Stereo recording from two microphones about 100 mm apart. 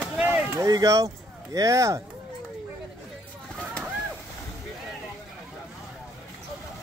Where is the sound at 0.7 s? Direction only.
35° right (ahead or behind).